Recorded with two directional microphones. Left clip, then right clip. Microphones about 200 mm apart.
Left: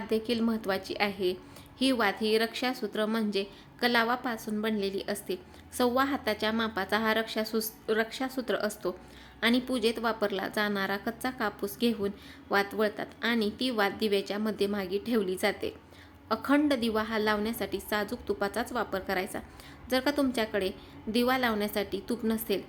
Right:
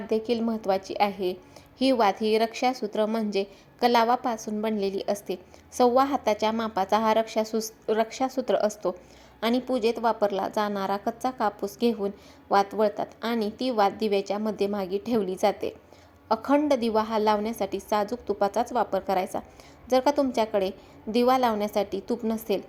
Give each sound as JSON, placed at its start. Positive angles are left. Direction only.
{"t": 0.1, "sound": "a woman's voice", "side_deg": -15}